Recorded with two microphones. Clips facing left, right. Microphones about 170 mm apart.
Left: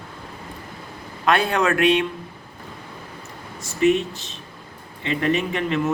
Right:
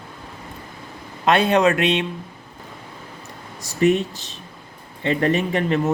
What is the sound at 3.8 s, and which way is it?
A man's voice, 40° right (ahead or behind).